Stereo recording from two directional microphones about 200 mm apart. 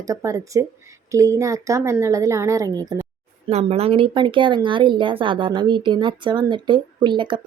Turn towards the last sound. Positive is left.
turn(degrees=-25)  # may be behind; listen again after turning